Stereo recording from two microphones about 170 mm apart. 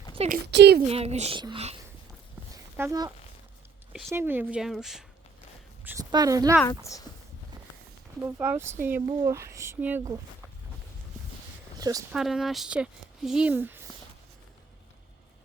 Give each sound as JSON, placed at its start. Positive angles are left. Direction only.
{"t": 0.4, "sound": "a woman's voice", "side_deg": -75}
{"t": 0.9, "sound": "a child's voice", "side_deg": -35}
{"t": 1.4, "sound": "speech", "side_deg": -25}
{"t": 2.7, "sound": "speech", "side_deg": -20}
{"t": 4.1, "sound": "speech", "side_deg": -10}
{"t": 5.8, "sound": "a woman's voice", "side_deg": -10}
{"t": 6.7, "sound": "speech", "side_deg": 20}
{"t": 8.2, "sound": "speech", "side_deg": -10}
{"t": 11.8, "sound": "speech", "side_deg": -20}
{"t": 12.1, "sound": "speech", "side_deg": 0}